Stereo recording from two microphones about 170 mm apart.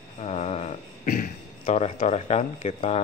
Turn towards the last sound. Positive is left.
turn(degrees=35)  # may be behind; listen again after turning